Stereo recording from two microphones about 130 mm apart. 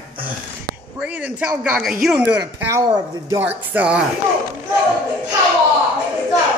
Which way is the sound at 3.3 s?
15° right (ahead or behind).